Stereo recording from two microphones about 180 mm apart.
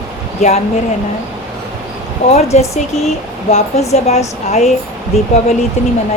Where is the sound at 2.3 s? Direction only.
35° left (ahead or behind).